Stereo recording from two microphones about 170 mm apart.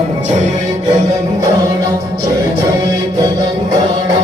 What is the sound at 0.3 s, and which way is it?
Music, 45° right (ahead or behind).